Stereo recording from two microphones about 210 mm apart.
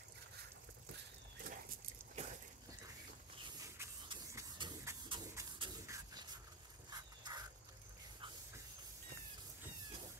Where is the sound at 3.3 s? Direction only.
20° right (ahead or behind).